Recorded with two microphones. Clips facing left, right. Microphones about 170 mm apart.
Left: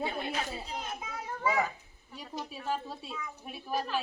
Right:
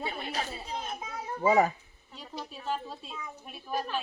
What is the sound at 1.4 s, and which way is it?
Speech, 35° right (ahead or behind).